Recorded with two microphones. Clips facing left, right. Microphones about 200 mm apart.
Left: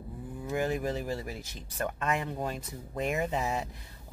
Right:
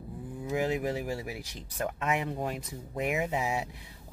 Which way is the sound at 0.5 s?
15° right (ahead or behind).